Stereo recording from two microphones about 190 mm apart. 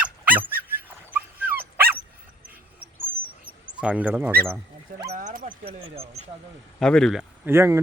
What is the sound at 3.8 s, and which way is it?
Speech, 5° right (ahead or behind).